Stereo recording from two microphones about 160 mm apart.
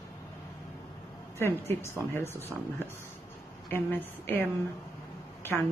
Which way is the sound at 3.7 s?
15° left (ahead or behind).